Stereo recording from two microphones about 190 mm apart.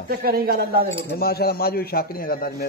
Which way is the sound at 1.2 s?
55° left (ahead or behind).